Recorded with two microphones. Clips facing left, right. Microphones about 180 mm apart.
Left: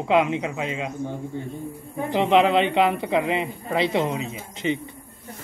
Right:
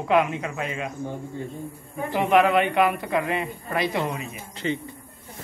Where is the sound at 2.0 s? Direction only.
20° left (ahead or behind).